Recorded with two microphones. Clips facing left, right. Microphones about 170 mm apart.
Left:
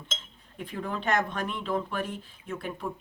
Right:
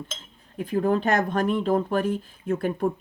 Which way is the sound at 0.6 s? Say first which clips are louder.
Right 10 dB; 40° right (ahead or behind).